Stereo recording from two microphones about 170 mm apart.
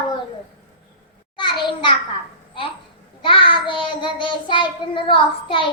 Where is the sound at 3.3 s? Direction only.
30° left (ahead or behind).